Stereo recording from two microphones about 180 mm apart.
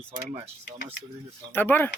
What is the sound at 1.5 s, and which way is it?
Speech, 10° left (ahead or behind).